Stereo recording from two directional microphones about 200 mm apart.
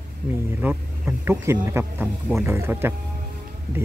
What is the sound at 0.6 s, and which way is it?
Speech, 5° right (ahead or behind).